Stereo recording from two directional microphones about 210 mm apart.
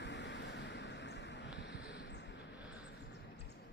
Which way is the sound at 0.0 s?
55° left (ahead or behind).